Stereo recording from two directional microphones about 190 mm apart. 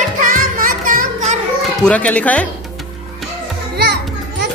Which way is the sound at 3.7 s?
60° right (ahead or behind).